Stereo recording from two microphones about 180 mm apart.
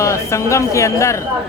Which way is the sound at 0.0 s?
15° left (ahead or behind).